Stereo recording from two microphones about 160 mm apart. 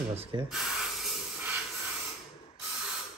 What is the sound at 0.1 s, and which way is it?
Speech, 35° right (ahead or behind).